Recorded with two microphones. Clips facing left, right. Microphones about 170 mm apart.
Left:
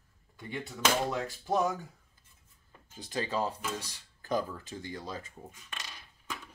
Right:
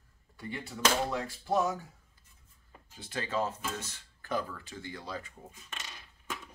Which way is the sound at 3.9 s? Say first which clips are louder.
Left 4 dB; 40° left (ahead or behind).